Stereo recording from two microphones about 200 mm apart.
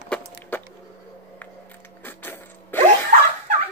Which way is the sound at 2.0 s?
10° left (ahead or behind).